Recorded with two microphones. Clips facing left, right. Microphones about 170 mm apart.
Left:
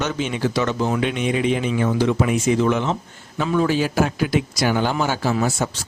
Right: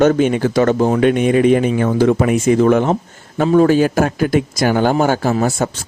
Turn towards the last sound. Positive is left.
turn(degrees=-50)  # may be behind; listen again after turning